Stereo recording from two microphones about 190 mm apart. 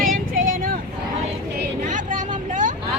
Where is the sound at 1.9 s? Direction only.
45° right (ahead or behind).